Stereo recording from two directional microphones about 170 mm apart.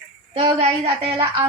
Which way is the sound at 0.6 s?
35° right (ahead or behind).